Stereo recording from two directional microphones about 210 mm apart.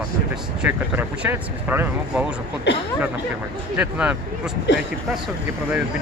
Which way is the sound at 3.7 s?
5° right (ahead or behind).